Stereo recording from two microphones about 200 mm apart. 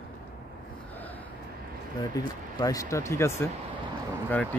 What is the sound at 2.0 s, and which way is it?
Speech, 20° left (ahead or behind).